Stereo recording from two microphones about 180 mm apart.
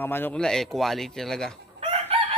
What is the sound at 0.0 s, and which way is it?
Speech, 10° left (ahead or behind).